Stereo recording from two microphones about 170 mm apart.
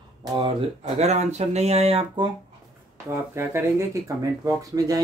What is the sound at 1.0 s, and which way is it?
Speech, 40° right (ahead or behind).